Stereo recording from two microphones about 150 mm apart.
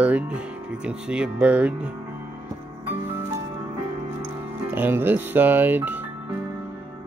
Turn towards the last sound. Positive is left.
turn(degrees=-10)  # may be behind; listen again after turning